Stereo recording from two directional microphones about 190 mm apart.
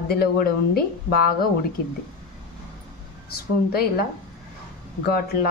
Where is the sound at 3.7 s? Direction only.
55° left (ahead or behind).